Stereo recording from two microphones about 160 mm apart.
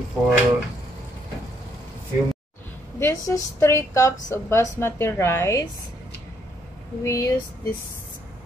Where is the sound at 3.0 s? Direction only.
20° left (ahead or behind).